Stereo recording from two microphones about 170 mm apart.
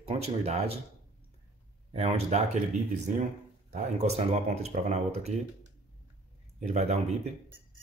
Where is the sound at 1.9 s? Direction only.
35° right (ahead or behind).